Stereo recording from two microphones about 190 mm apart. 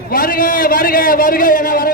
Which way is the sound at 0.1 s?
50° left (ahead or behind).